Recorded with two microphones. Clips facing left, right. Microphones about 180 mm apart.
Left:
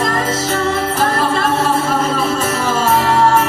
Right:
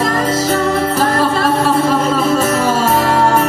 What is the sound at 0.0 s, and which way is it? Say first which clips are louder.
Music: right 3 dB; 40° right (ahead or behind).